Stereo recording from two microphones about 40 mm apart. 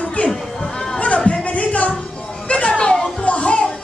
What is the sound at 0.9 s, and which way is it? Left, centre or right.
Music, left.